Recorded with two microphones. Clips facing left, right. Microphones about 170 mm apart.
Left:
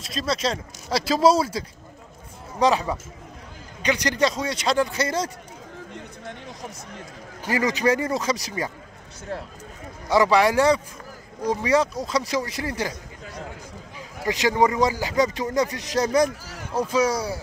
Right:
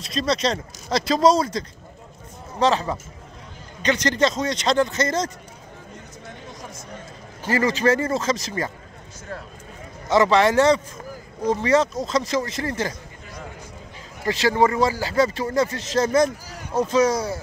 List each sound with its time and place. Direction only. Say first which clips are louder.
0.0 s speech: right 3 dB; 5° left (ahead or behind)
7.4 s speech: right 2 dB; 15° left (ahead or behind)
10.0 s speech: right 1 dB; 10° left (ahead or behind)
13.9 s speech: right 1 dB; 15° left (ahead or behind)